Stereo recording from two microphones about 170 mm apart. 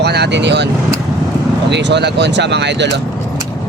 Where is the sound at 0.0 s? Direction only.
80° right.